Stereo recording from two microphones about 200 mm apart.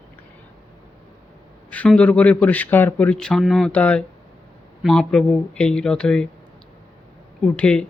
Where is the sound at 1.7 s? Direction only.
5° left (ahead or behind).